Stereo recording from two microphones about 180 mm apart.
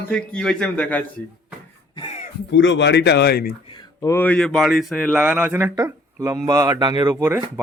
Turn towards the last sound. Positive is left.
turn(degrees=-15)  # may be behind; listen again after turning